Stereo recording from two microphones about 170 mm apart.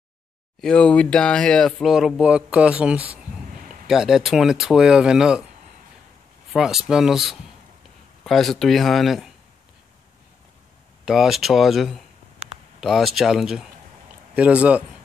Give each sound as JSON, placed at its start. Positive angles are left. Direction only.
{"t": 0.6, "sound": "speech", "side_deg": 5}
{"t": 3.5, "sound": "a sound", "side_deg": -55}
{"t": 3.8, "sound": "speech", "side_deg": 0}
{"t": 6.5, "sound": "speech", "side_deg": -5}
{"t": 11.1, "sound": "speech", "side_deg": 0}